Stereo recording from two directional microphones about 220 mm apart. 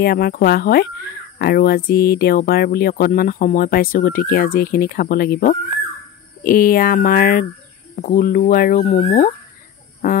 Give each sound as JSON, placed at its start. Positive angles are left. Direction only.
{"t": 0.0, "sound": "speech", "side_deg": 45}